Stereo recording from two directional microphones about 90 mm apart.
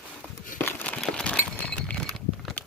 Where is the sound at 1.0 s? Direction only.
10° left (ahead or behind).